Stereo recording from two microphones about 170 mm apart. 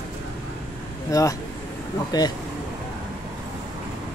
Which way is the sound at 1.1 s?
20° left (ahead or behind).